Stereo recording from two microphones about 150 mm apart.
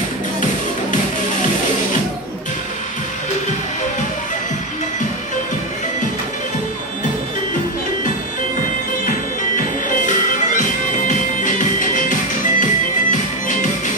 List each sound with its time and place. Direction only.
9.6 s music: 55° left (ahead or behind)